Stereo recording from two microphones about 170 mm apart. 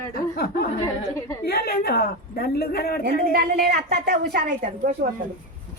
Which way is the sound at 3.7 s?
65° right (ahead or behind).